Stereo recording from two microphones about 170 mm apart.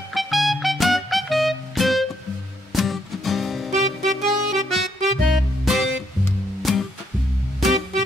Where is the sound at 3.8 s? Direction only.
45° right (ahead or behind).